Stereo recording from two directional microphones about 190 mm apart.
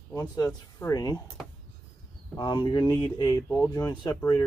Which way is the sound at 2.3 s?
25° left (ahead or behind).